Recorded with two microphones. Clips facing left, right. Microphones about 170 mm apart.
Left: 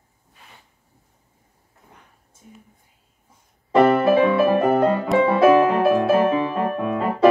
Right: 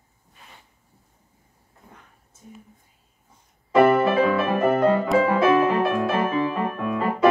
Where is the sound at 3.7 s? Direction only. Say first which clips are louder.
Left 2 dB; 25° left (ahead or behind).